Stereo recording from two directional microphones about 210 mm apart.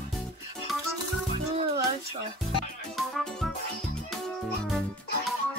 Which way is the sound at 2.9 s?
Centre (ahead or behind).